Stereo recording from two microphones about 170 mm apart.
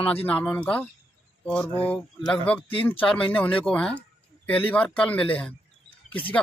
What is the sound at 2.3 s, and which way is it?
A man's voice, 5° left (ahead or behind).